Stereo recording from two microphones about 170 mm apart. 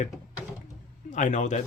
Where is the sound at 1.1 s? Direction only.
45° left (ahead or behind).